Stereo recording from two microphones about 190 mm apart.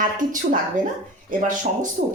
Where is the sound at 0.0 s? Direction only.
45° right (ahead or behind).